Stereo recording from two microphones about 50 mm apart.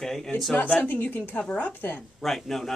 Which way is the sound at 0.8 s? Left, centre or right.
Left.